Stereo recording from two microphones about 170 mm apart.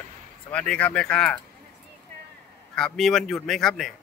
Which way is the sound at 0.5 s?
5° left (ahead or behind).